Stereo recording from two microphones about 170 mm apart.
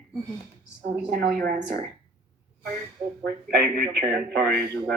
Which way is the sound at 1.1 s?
65° right (ahead or behind).